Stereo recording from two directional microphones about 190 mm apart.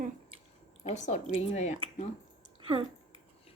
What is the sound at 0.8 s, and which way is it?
Speech, 35° left (ahead or behind).